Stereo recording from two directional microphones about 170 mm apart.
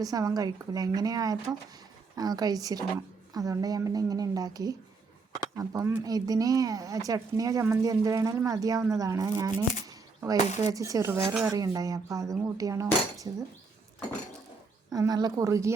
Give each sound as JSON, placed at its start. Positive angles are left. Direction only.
{"t": 0.0, "sound": "speech", "side_deg": -20}
{"t": 9.9, "sound": "a sound", "side_deg": -20}
{"t": 10.6, "sound": "speech", "side_deg": -20}
{"t": 14.9, "sound": "speech", "side_deg": -20}